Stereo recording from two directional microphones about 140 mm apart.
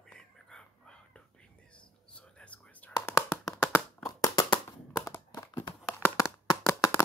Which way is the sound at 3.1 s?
20° left (ahead or behind).